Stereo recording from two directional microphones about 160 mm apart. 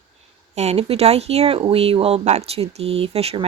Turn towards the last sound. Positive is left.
turn(degrees=-40)  # may be behind; listen again after turning